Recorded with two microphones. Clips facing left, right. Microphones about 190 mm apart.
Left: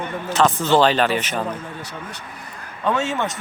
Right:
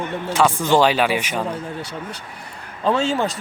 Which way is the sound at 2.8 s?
30° right (ahead or behind).